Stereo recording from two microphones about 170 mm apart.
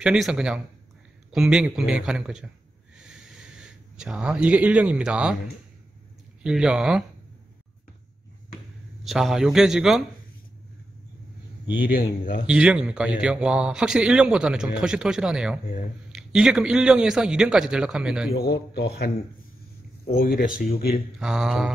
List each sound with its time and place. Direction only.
0.0 s a man's voice: 5° right (ahead or behind)
3.0 s a sound: 5° right (ahead or behind)
6.4 s a man's voice: 5° right (ahead or behind)
9.0 s a man's voice: centre (ahead or behind)
11.6 s a man's voice: 10° right (ahead or behind)
18.3 s a man's voice: 65° left (ahead or behind)
20.2 s a man's voice: 60° left (ahead or behind)
21.2 s a man's voice: 5° right (ahead or behind)